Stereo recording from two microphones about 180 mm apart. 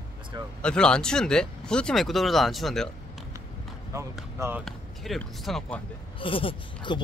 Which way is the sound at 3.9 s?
15° right (ahead or behind).